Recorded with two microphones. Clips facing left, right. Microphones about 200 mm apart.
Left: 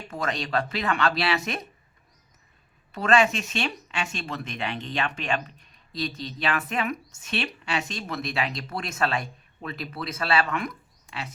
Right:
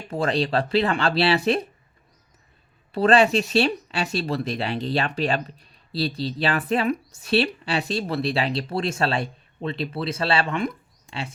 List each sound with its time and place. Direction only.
0.1 s speech: 30° right (ahead or behind)
2.9 s speech: 35° right (ahead or behind)